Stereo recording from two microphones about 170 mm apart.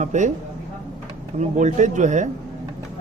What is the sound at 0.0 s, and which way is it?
Speech, 45° right (ahead or behind).